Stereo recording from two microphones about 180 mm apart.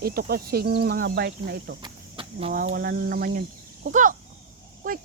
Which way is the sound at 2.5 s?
55° right (ahead or behind).